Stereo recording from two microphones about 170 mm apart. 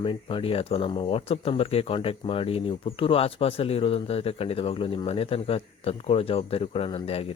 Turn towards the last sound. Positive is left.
turn(degrees=35)  # may be behind; listen again after turning